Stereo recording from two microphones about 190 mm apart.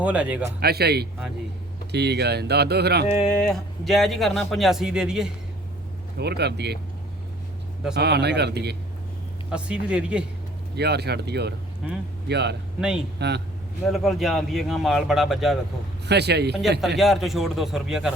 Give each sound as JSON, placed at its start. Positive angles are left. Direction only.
{"t": 0.0, "sound": "speech", "side_deg": -5}
{"t": 0.6, "sound": "speech", "side_deg": -55}
{"t": 3.1, "sound": "speech", "side_deg": 5}
{"t": 6.1, "sound": "speech", "side_deg": -60}
{"t": 7.9, "sound": "speech", "side_deg": -60}
{"t": 9.5, "sound": "speech", "side_deg": -5}
{"t": 10.8, "sound": "speech", "side_deg": -60}
{"t": 13.9, "sound": "speech", "side_deg": 0}
{"t": 16.0, "sound": "speech", "side_deg": -60}
{"t": 17.0, "sound": "speech", "side_deg": 0}